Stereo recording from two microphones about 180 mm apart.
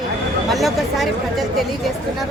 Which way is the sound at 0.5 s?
Centre (ahead or behind).